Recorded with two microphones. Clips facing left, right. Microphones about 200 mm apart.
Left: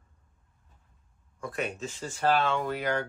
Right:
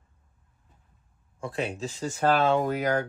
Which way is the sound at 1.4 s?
30° right (ahead or behind).